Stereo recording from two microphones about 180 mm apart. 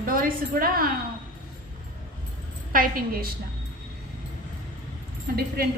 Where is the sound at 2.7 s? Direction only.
55° right (ahead or behind).